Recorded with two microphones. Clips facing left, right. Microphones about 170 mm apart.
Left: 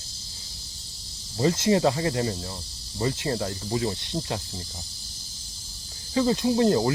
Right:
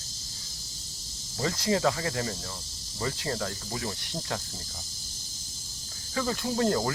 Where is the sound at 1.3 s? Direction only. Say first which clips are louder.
Left 6 dB; 20° left (ahead or behind).